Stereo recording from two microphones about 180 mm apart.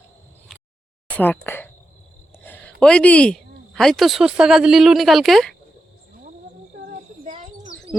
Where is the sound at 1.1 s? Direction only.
10° left (ahead or behind).